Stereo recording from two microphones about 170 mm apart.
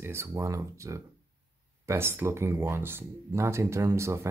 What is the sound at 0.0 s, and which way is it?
Speech, 15° right (ahead or behind).